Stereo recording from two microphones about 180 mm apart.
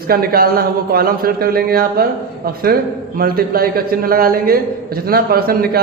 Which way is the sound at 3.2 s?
55° right (ahead or behind).